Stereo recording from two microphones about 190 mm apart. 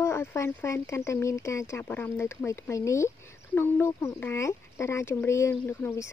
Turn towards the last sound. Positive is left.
turn(degrees=10)  # may be behind; listen again after turning